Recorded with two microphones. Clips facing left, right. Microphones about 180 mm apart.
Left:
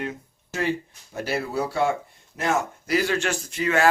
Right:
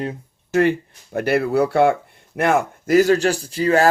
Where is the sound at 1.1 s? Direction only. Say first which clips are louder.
Right 9 dB; 60° right (ahead or behind); by 3.9 s 35° right (ahead or behind).